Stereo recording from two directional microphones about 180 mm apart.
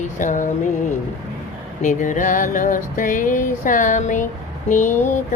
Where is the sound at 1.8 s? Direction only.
45° left (ahead or behind).